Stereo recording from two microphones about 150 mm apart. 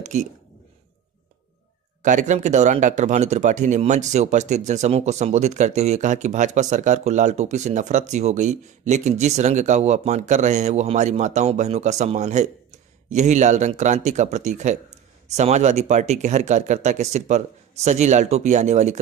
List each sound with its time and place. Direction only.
0.0 s speech: 50° right (ahead or behind)
2.0 s speech: 55° right (ahead or behind)